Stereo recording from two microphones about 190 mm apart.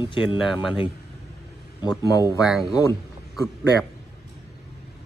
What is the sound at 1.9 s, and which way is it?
Speech, 20° left (ahead or behind).